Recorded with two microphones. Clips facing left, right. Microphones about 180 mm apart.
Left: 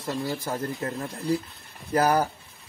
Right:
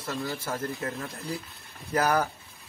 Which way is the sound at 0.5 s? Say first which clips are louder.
Left 2 dB; 35° left (ahead or behind).